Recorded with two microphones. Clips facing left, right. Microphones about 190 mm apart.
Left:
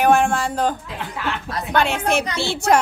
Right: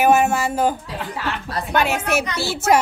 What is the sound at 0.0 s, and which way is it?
A man's voice, 5° right (ahead or behind).